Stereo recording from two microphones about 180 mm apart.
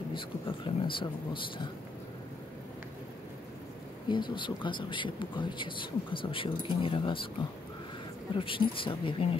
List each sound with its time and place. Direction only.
0.1 s speech: 30° left (ahead or behind)
4.1 s speech: 25° left (ahead or behind)
8.4 s speech: 30° left (ahead or behind)